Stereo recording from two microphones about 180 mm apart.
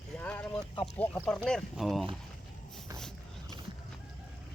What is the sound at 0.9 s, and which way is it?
Speech, 10° left (ahead or behind).